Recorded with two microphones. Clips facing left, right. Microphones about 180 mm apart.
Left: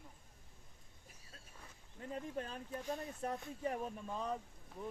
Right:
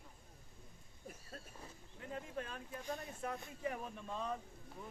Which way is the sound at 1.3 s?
50° right (ahead or behind).